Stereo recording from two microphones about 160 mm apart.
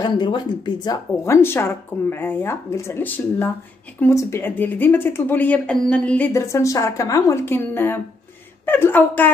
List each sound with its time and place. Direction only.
0.0 s speech: 30° left (ahead or behind)
1.2 s speech: 15° left (ahead or behind)